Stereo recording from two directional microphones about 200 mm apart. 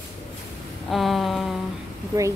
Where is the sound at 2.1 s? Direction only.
15° right (ahead or behind).